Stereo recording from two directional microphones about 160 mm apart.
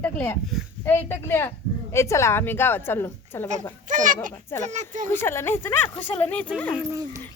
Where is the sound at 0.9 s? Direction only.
15° left (ahead or behind).